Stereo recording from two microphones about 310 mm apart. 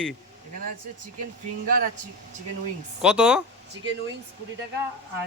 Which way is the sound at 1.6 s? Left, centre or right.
Right.